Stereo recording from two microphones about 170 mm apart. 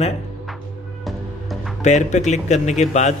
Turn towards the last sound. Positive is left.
turn(degrees=45)  # may be behind; listen again after turning